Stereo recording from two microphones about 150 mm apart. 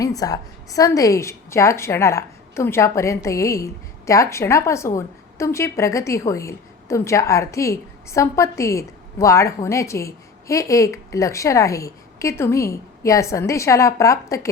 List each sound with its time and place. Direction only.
0.0 s a woman's voice: 25° left (ahead or behind)